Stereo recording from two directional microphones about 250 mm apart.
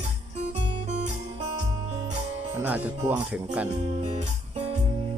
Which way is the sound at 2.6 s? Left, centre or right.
Centre.